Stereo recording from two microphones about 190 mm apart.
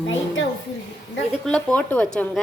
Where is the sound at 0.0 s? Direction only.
75° left (ahead or behind).